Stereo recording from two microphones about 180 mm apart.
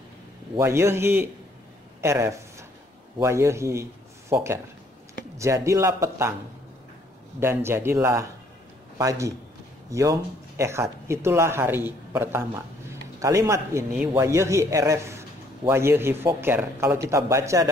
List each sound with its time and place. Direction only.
0.6 s a man's voice: 15° right (ahead or behind)
7.3 s a man's voice: 15° right (ahead or behind)